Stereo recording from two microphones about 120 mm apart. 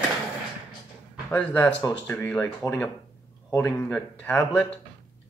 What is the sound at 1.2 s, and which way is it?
Speech, 15° left (ahead or behind).